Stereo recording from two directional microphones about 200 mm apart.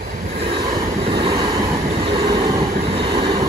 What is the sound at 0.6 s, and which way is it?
Vehicle, 50° right (ahead or behind).